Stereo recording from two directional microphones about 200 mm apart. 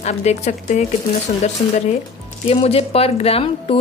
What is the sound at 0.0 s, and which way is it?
Speech, 35° left (ahead or behind).